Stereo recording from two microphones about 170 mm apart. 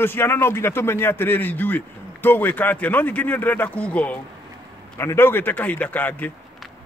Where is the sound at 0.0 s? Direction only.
15° left (ahead or behind).